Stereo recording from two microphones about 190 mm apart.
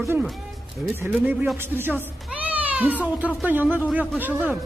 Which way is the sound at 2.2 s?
10° right (ahead or behind).